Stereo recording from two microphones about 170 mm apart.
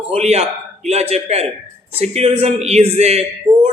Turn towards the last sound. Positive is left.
turn(degrees=-40)  # may be behind; listen again after turning